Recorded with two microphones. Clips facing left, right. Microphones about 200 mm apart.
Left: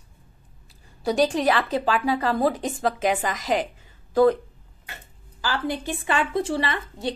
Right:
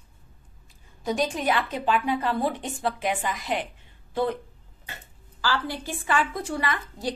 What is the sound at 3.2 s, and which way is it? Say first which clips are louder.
Speech: left 4 dB; 90° left.